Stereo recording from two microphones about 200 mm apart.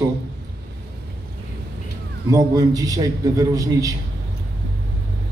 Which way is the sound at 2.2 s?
15° right (ahead or behind).